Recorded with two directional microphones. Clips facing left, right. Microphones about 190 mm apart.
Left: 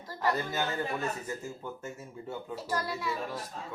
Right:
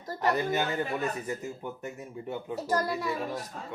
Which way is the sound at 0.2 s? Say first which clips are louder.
Right 3 dB; 20° right (ahead or behind).